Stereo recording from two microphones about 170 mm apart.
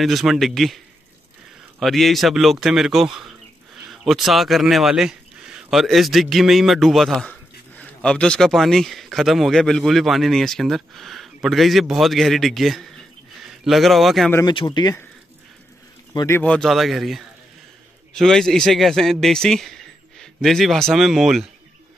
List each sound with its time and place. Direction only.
0.0 s a man's voice: centre (ahead or behind)
1.8 s a man's voice: centre (ahead or behind)
14.3 s speech: 25° left (ahead or behind)
16.1 s a man's voice: 15° left (ahead or behind); by 21.5 s centre (ahead or behind)